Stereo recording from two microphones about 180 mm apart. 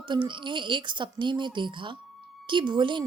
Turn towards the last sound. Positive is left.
turn(degrees=-25)  # may be behind; listen again after turning